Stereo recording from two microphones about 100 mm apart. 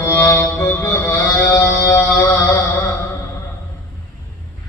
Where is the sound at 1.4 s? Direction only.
20° left (ahead or behind).